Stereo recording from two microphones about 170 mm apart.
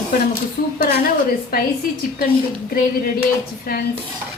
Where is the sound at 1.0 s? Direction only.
60° left (ahead or behind).